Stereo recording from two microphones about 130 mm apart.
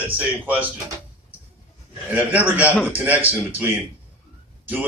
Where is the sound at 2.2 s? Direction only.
10° right (ahead or behind).